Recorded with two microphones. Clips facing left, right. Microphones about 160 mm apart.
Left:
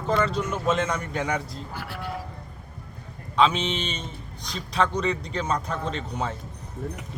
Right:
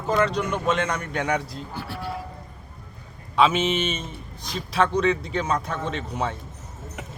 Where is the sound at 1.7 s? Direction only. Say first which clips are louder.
Right 2 dB; 30° right (ahead or behind).